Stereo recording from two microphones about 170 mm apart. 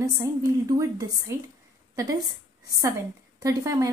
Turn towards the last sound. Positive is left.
turn(degrees=-20)  # may be behind; listen again after turning